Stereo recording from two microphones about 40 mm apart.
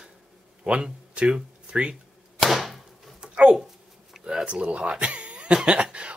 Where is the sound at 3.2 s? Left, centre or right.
Right.